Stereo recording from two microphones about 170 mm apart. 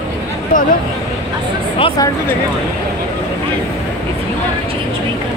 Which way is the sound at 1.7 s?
25° left (ahead or behind).